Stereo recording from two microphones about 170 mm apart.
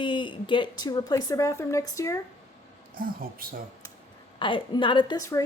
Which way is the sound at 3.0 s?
60° right (ahead or behind).